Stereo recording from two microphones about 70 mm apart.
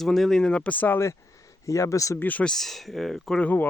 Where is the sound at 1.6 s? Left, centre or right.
Left.